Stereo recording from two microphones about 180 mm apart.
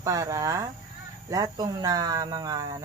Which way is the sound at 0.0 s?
15° right (ahead or behind).